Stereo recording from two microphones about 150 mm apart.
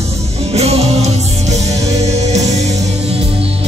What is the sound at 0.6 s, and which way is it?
Music, 45° right (ahead or behind).